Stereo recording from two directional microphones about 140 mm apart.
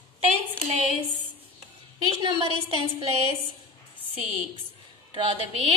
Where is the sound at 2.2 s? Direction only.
45° right (ahead or behind).